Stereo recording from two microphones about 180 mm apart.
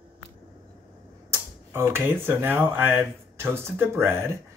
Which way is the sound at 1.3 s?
15° right (ahead or behind).